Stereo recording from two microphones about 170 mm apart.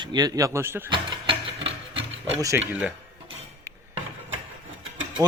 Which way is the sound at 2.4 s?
20° right (ahead or behind).